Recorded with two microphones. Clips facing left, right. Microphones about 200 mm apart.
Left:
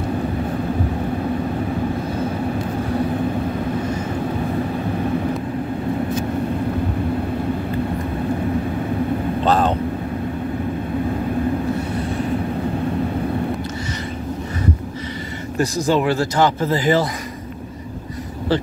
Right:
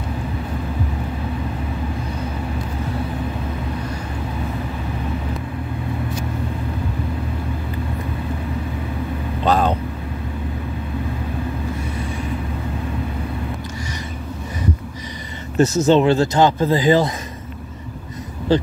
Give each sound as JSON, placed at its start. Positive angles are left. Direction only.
{"t": 9.5, "sound": "vehicle", "side_deg": 0}
{"t": 15.5, "sound": "speech", "side_deg": -25}